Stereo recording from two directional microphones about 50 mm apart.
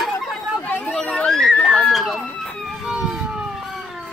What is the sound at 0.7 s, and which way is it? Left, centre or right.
Chatter, left.